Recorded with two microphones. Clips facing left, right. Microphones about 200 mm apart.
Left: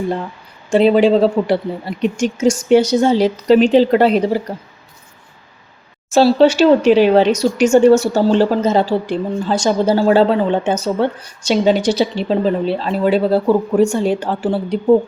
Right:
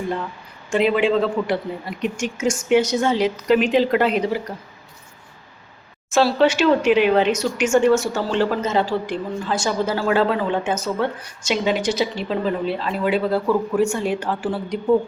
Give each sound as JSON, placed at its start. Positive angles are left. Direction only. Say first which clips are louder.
{"t": 0.7, "sound": "speech", "louder": "left 7 dB", "side_deg": 35}
{"t": 6.1, "sound": "speech", "louder": "left 6 dB", "side_deg": 30}